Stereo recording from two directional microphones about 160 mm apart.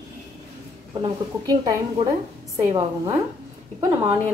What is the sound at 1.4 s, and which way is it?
Speech, 25° right (ahead or behind).